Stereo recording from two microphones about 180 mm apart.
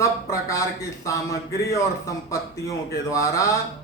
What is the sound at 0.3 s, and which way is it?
Speech, 15° left (ahead or behind).